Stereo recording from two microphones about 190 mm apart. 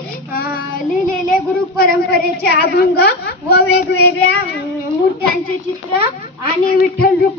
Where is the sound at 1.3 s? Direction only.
50° left (ahead or behind).